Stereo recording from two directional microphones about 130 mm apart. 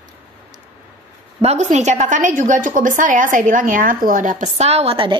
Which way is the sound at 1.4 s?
55° right (ahead or behind).